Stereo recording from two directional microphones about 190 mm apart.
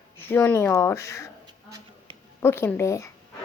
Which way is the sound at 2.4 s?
10° left (ahead or behind).